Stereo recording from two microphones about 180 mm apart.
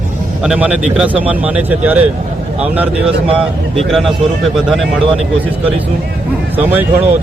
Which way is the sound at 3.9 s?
Centre (ahead or behind).